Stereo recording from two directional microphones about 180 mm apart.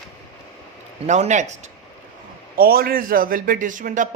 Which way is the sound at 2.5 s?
55° right (ahead or behind).